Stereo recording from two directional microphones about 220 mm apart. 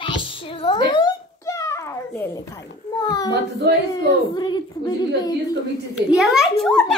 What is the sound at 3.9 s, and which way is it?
A child's voice, 20° left (ahead or behind).